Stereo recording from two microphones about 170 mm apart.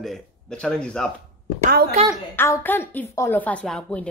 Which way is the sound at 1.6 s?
60° right (ahead or behind).